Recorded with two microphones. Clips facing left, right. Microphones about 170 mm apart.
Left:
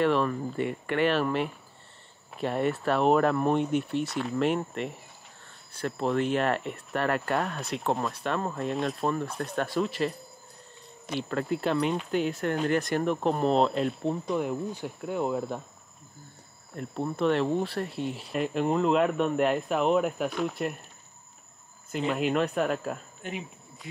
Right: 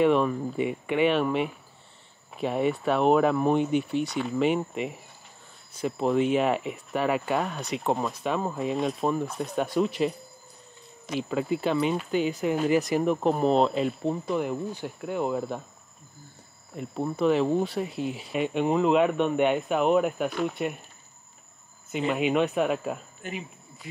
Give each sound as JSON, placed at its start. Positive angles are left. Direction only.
{"t": 0.0, "sound": "speech", "side_deg": 0}
{"t": 16.7, "sound": "speech", "side_deg": 0}
{"t": 21.9, "sound": "speech", "side_deg": 0}